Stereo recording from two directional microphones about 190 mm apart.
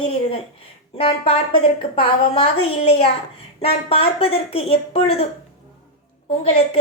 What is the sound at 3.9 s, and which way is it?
Speech, 30° left (ahead or behind).